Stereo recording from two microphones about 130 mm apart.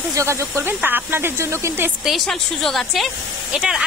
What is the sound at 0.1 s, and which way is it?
Speech, 20° right (ahead or behind).